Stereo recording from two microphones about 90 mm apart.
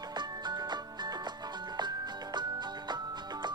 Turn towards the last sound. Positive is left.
turn(degrees=-55)  # may be behind; listen again after turning